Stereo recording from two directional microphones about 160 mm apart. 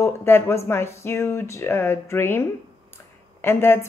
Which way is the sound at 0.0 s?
15° left (ahead or behind).